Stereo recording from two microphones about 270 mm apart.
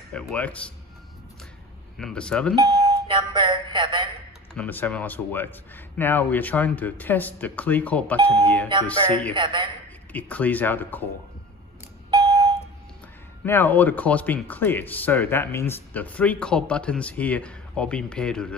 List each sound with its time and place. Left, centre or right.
0.1 s speech: centre
2.0 s speech: centre
2.5 s speech: centre
4.6 s speech: centre
8.2 s a man's voice: centre
10.1 s speech: centre
12.1 s a sound: centre
13.5 s speech: centre